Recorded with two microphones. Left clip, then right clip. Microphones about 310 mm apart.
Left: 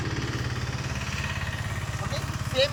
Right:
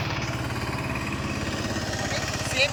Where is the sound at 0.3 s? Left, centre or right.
Right.